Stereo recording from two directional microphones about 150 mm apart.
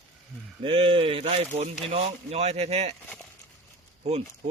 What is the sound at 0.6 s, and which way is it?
Speech, 35° right (ahead or behind).